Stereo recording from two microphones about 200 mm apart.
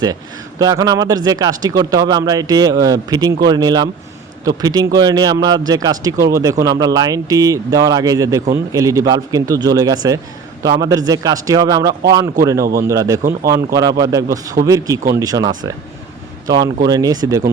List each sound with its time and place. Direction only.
0.6 s a man's voice: 20° right (ahead or behind)